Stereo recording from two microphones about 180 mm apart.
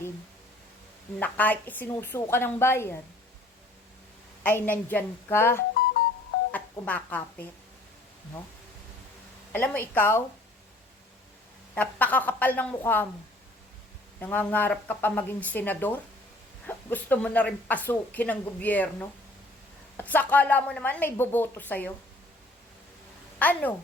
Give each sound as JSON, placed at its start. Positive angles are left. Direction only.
{"t": 1.2, "sound": "a woman's voice", "side_deg": 10}
{"t": 4.4, "sound": "a woman's voice", "side_deg": 10}
{"t": 9.5, "sound": "a woman's voice", "side_deg": 10}
{"t": 11.7, "sound": "a woman's voice", "side_deg": 10}
{"t": 14.2, "sound": "a woman's voice", "side_deg": 10}
{"t": 23.4, "sound": "a woman's voice", "side_deg": 10}